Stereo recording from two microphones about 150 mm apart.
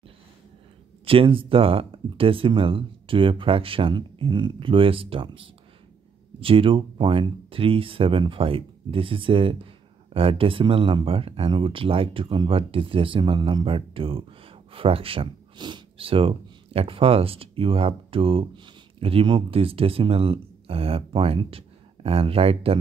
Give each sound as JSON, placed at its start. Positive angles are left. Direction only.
{"t": 1.0, "sound": "speech", "side_deg": -35}